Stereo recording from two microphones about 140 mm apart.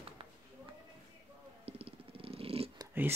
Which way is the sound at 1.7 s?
45° right (ahead or behind).